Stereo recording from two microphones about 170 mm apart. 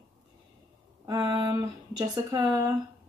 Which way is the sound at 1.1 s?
25° right (ahead or behind).